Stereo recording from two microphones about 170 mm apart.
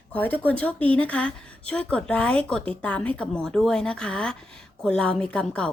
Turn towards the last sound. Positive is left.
turn(degrees=5)  # may be behind; listen again after turning